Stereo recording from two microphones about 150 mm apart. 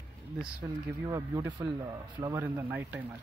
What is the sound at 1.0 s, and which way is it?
Speech, 20° right (ahead or behind).